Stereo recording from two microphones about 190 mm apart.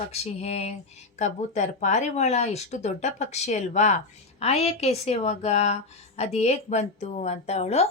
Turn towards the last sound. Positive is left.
turn(degrees=35)  # may be behind; listen again after turning